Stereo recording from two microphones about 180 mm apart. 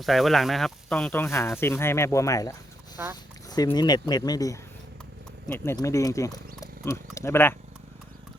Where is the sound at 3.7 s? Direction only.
25° left (ahead or behind).